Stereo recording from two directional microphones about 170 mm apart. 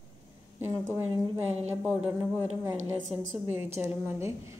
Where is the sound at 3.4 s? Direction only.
15° right (ahead or behind).